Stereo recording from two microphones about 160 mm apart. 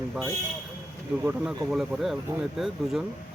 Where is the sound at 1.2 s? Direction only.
15° right (ahead or behind).